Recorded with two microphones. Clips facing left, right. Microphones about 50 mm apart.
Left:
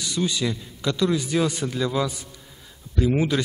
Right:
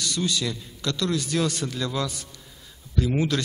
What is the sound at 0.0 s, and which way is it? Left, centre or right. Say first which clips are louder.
A man's voice: left 2 dB; centre.